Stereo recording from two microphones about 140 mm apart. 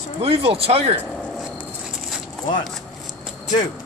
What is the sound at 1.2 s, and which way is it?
Speech, centre (ahead or behind).